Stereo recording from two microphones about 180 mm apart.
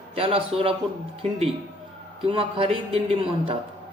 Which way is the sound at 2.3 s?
30° right (ahead or behind).